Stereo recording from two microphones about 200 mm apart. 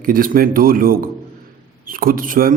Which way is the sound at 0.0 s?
45° right (ahead or behind).